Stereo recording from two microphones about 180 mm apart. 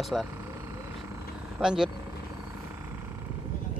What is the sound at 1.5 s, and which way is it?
Speech, 5° right (ahead or behind).